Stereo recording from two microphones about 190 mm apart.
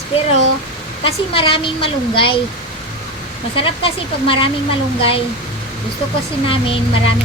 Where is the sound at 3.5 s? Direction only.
30° left (ahead or behind).